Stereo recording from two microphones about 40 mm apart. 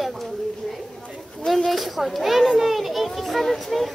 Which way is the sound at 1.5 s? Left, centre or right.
Centre.